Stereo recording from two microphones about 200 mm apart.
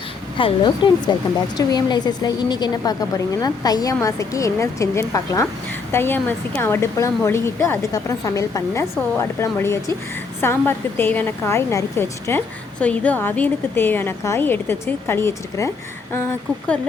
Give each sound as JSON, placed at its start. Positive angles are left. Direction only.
{"t": 0.3, "sound": "a woman's voice", "side_deg": 25}